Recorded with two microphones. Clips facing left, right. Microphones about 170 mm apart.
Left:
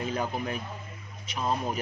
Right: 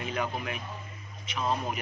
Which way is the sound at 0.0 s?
35° left (ahead or behind).